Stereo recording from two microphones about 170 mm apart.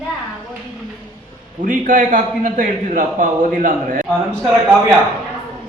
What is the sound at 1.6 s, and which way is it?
A man's voice, 50° right (ahead or behind).